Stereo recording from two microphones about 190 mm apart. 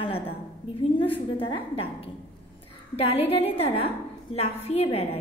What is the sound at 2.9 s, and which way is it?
A woman's voice, 30° left (ahead or behind).